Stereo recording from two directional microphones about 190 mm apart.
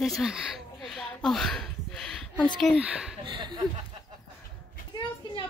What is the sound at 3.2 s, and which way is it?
Speech, 25° right (ahead or behind).